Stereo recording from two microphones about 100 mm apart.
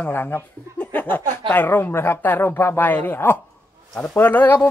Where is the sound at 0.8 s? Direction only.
15° left (ahead or behind).